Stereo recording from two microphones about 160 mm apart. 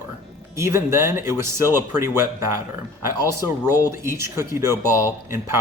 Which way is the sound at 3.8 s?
15° right (ahead or behind).